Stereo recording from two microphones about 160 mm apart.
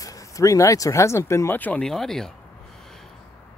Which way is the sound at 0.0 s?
20° left (ahead or behind).